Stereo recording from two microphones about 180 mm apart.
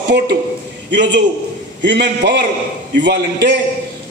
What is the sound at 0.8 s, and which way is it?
A man's voice, 75° right (ahead or behind).